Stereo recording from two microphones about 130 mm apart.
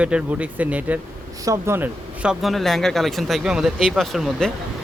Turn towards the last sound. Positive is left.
turn(degrees=0)  # may be behind; listen again after turning